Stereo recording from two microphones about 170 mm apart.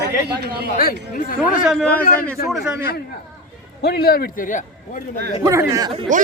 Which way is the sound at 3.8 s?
70° left (ahead or behind).